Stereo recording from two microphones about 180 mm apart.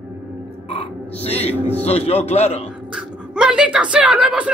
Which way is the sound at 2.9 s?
5° right (ahead or behind).